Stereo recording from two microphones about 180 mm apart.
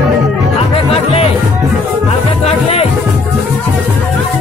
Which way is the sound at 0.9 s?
35° left (ahead or behind).